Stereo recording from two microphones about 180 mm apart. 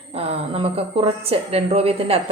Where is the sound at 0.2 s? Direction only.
35° right (ahead or behind).